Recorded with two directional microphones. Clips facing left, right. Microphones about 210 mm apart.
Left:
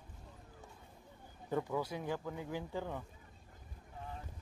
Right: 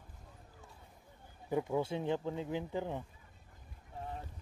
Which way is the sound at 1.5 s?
20° right (ahead or behind).